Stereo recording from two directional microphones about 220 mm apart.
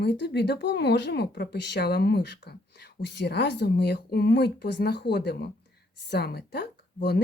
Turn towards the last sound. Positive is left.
turn(degrees=45)  # may be behind; listen again after turning